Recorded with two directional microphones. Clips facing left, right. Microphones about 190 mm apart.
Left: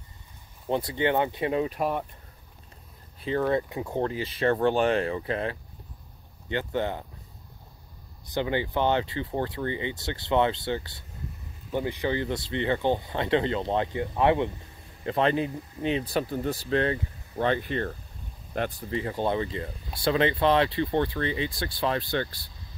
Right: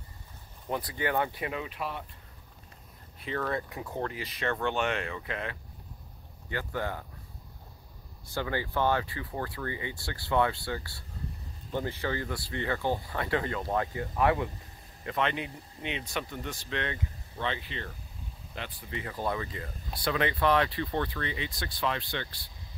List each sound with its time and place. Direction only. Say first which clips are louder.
0.7 s speech: left 6 dB; 25° left (ahead or behind); by 2.0 s 45° left (ahead or behind)
3.2 s speech: left 7 dB; 30° left (ahead or behind)
8.3 s speech: left 5 dB; 20° left (ahead or behind)
15.0 s speech: left 7 dB; 35° left (ahead or behind)